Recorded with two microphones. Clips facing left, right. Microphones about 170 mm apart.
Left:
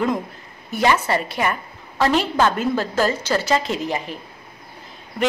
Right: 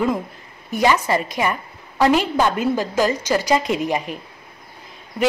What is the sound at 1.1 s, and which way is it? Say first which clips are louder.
A woman's voice: right 1 dB; 15° right (ahead or behind).